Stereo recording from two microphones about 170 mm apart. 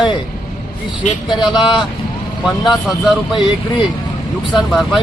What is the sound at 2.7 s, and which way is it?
Speech, centre (ahead or behind).